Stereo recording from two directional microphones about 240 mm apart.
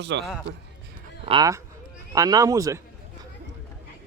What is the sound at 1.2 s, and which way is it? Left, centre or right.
A man's voice, centre.